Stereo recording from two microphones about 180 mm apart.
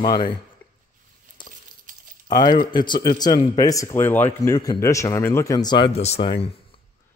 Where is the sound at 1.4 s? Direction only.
25° left (ahead or behind).